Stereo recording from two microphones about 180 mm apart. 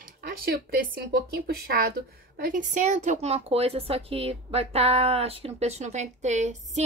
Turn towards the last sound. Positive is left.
turn(degrees=-40)  # may be behind; listen again after turning